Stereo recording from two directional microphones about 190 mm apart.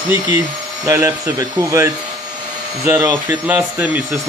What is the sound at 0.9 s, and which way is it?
Speech, 15° right (ahead or behind).